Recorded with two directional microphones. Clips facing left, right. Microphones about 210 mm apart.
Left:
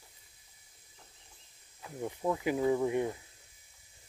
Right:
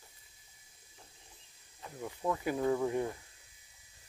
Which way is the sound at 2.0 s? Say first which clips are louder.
Left 3 dB; 20° left (ahead or behind).